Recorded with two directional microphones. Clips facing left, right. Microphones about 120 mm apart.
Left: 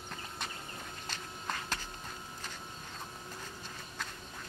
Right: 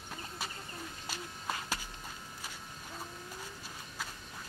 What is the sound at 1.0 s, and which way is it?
Walk, 10° right (ahead or behind).